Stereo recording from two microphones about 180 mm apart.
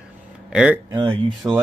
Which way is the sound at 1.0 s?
25° right (ahead or behind).